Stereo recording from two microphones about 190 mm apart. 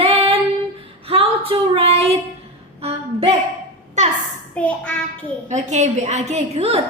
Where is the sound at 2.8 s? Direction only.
30° right (ahead or behind).